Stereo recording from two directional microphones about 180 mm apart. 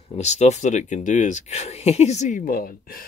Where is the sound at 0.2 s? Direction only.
40° left (ahead or behind).